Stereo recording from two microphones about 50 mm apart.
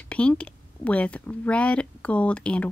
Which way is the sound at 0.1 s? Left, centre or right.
Left.